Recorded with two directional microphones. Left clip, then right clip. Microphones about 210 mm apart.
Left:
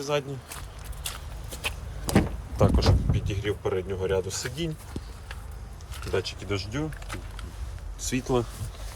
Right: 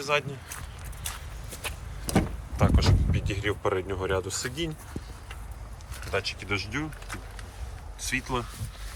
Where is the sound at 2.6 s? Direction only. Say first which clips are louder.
Left 3 dB; 20° left (ahead or behind).